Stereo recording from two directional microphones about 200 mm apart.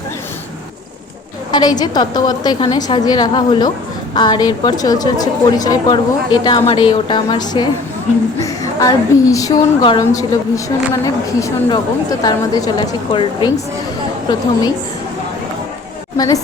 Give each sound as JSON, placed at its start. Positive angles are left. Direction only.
{"t": 1.5, "sound": "a woman's voice", "side_deg": 20}
{"t": 16.1, "sound": "a woman's voice", "side_deg": 20}